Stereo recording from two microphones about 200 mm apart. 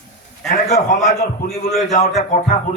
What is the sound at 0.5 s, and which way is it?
Speech, 35° left (ahead or behind).